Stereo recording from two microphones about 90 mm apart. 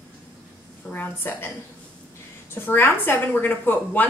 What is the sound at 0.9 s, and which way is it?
Speech, 25° left (ahead or behind).